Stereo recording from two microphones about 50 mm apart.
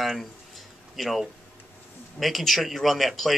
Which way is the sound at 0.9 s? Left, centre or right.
Centre.